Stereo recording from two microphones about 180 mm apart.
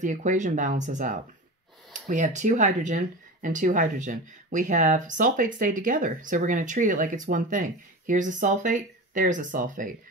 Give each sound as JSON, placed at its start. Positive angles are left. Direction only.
{"t": 0.0, "sound": "speech", "side_deg": -45}